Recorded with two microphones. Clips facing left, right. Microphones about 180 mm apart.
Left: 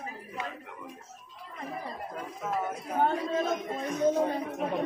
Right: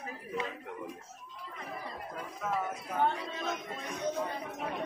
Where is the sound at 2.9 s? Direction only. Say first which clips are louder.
Left 5 dB; 40° left (ahead or behind).